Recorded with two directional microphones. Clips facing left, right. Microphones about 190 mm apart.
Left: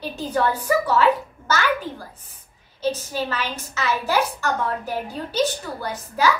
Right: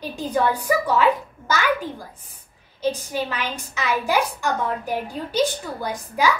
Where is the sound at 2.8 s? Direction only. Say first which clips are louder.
Even; 15° right (ahead or behind).